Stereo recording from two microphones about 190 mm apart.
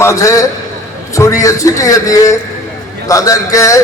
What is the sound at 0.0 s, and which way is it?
A man's voice, 15° left (ahead or behind).